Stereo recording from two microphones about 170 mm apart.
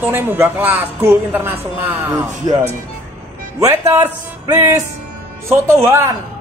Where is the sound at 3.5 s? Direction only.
20° right (ahead or behind).